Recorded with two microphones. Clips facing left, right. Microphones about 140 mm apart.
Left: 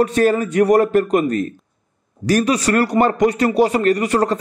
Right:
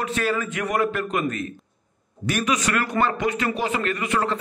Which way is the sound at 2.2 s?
35° left (ahead or behind).